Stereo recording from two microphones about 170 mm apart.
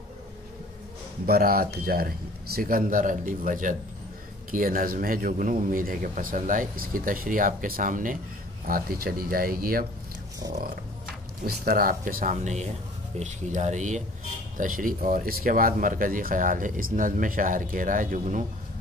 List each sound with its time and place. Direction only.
1.2 s speech: 65° right (ahead or behind)
11.4 s speech: 60° right (ahead or behind)